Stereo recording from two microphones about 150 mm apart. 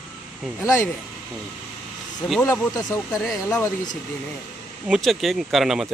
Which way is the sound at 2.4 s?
20° left (ahead or behind).